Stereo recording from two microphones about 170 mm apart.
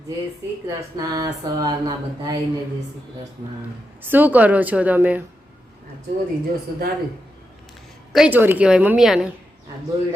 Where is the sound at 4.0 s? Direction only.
10° right (ahead or behind).